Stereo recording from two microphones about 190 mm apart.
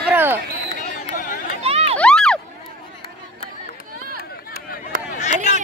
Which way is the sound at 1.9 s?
5° left (ahead or behind).